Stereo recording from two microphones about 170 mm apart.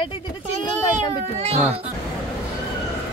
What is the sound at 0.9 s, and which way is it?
Speech, 35° right (ahead or behind).